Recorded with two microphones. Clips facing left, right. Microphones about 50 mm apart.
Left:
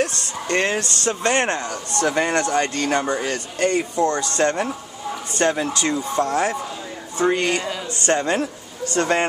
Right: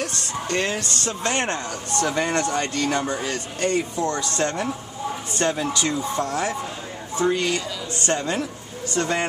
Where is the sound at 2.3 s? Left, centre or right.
Left.